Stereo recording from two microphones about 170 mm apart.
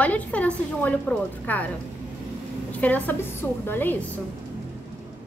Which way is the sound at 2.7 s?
10° left (ahead or behind).